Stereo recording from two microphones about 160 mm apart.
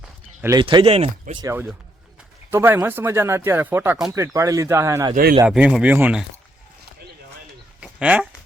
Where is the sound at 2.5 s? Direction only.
15° right (ahead or behind).